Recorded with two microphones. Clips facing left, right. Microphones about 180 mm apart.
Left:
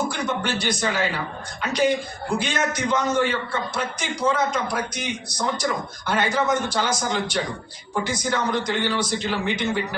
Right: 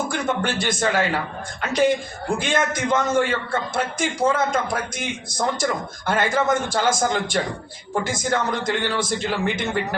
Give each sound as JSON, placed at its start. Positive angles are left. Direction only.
{"t": 0.1, "sound": "a man's voice", "side_deg": -50}
{"t": 2.4, "sound": "a man's voice", "side_deg": -50}